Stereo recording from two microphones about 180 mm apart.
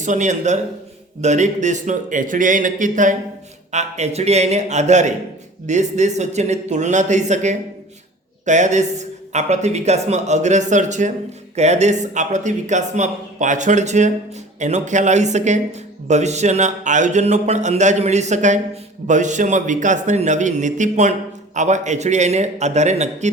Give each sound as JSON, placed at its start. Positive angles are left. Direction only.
{"t": 0.0, "sound": "a man's voice", "side_deg": -40}